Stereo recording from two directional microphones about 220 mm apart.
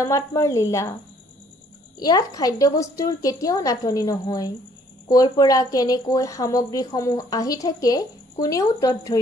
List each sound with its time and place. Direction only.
0.0 s a woman's voice: 15° left (ahead or behind)
2.0 s a woman's voice: 15° left (ahead or behind)